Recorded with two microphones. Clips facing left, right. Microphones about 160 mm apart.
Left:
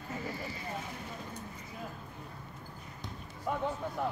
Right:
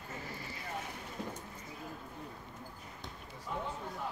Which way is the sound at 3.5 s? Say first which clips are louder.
Left 5 dB; 70° left (ahead or behind).